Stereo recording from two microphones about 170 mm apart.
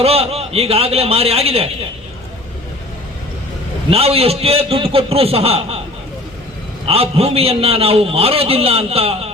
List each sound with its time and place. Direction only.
0.0 s a man's voice: 35° right (ahead or behind)
3.8 s a man's voice: 35° right (ahead or behind)
6.8 s a man's voice: 35° right (ahead or behind)